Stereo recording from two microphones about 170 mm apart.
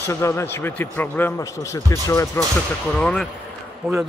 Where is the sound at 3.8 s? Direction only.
15° right (ahead or behind).